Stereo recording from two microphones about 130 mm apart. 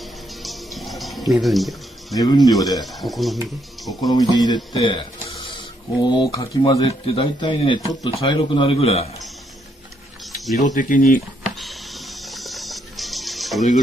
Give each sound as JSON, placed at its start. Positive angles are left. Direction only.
{"t": 0.4, "sound": "music", "side_deg": 0}
{"t": 2.1, "sound": "speech", "side_deg": 30}
{"t": 2.8, "sound": "speech", "side_deg": 0}
{"t": 4.0, "sound": "a man's voice", "side_deg": 30}
{"t": 4.7, "sound": "a sound", "side_deg": 40}
{"t": 6.0, "sound": "a man's voice", "side_deg": 35}
{"t": 10.6, "sound": "speech", "side_deg": 80}
{"t": 11.4, "sound": "music", "side_deg": 0}